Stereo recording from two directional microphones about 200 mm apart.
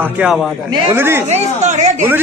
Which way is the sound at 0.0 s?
5° right (ahead or behind).